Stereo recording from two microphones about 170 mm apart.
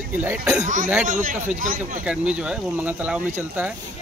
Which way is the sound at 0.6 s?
50° right (ahead or behind).